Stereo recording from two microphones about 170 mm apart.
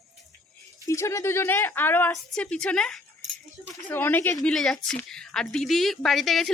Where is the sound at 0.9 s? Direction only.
15° left (ahead or behind).